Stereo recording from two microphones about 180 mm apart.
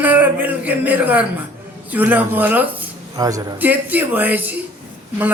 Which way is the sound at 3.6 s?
10° right (ahead or behind).